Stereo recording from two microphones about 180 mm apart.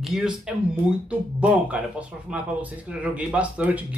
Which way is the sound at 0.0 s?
Centre (ahead or behind).